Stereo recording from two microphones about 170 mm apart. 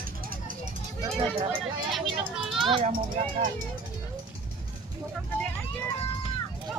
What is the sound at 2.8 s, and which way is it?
Speech, 50° right (ahead or behind).